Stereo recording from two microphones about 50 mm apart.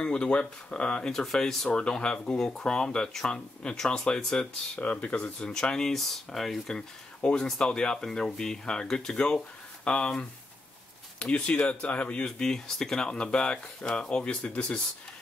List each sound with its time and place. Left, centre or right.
0.0 s speech: left
1.2 s speech: centre
1.7 s speech: centre
4.7 s speech: left
5.4 s speech: centre
12.3 s speech: centre